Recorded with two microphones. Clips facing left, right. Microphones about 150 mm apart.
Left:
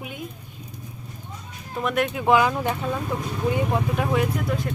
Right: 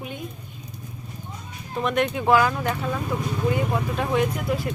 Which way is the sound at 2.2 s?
15° left (ahead or behind).